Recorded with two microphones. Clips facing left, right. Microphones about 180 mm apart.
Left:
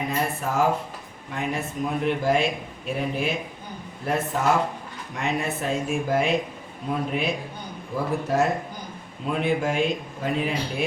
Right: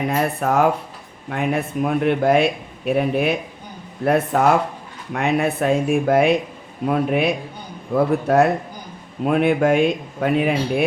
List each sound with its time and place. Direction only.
0.1 s speech: 60° right (ahead or behind)